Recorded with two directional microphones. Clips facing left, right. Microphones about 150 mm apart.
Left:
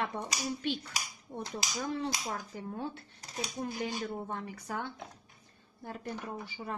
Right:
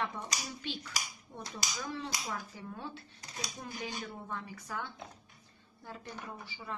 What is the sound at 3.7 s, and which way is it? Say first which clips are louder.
Speech: left 4 dB; 25° left (ahead or behind).